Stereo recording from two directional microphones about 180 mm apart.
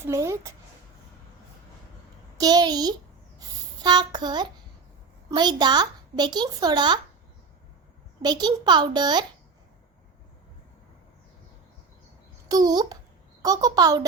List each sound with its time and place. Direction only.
0.0 s speech: 15° right (ahead or behind)
2.4 s a child's voice: 20° right (ahead or behind)
3.3 s a sound: 20° right (ahead or behind)
5.3 s a child's voice: 25° right (ahead or behind)
8.2 s a child's voice: 20° right (ahead or behind)
12.5 s a child's voice: 20° right (ahead or behind)